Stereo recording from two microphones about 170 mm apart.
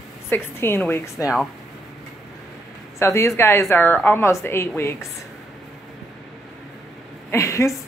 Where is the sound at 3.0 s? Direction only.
15° left (ahead or behind).